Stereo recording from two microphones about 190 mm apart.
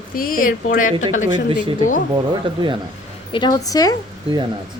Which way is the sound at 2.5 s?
25° right (ahead or behind).